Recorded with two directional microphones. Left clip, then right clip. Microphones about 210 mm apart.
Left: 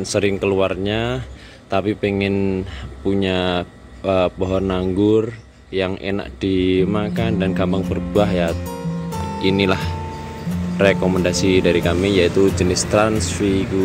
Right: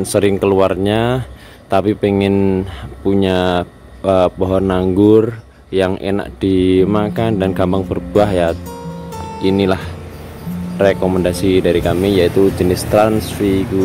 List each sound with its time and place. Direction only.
0.0 s speech: 20° right (ahead or behind)
8.6 s music: centre (ahead or behind)
10.8 s speech: 5° right (ahead or behind)